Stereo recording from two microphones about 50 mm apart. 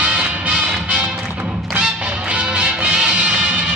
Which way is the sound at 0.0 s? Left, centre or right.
Right.